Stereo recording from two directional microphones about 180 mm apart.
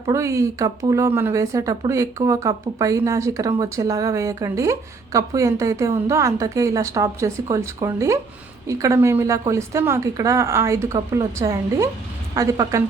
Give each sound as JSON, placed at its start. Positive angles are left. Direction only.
{"t": 0.0, "sound": "a woman's voice", "side_deg": -15}